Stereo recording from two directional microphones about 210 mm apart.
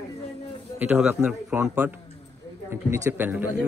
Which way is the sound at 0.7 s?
10° right (ahead or behind).